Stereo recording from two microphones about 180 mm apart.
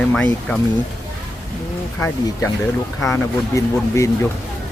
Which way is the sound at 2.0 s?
15° left (ahead or behind).